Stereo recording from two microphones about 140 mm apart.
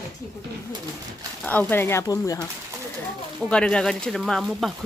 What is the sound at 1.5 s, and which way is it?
Speech, 15° left (ahead or behind).